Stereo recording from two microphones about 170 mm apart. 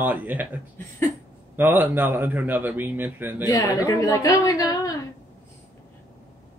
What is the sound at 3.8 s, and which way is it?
Speech, 20° left (ahead or behind).